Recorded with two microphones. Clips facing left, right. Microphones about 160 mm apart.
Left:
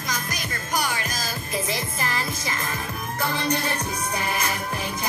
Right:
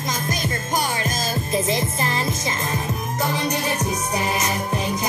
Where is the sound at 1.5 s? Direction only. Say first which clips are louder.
Right 6 dB; 25° right (ahead or behind).